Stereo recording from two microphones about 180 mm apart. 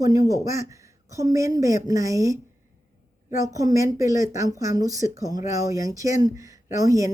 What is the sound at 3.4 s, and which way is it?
Speech, 20° right (ahead or behind).